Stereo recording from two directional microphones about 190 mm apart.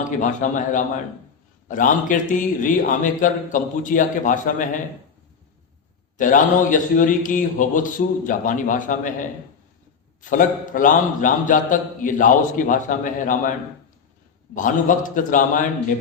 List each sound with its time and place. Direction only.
0.2 s a man's voice: 40° left (ahead or behind)
6.1 s a man's voice: 45° left (ahead or behind)
14.5 s a man's voice: 45° left (ahead or behind)